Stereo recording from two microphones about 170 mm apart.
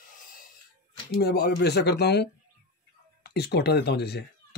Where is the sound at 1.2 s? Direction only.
70° left (ahead or behind).